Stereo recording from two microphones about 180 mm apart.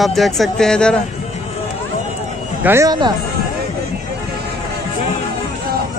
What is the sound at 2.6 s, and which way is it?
Speech, 15° right (ahead or behind).